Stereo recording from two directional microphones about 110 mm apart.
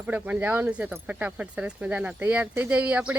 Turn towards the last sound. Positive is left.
turn(degrees=-10)  # may be behind; listen again after turning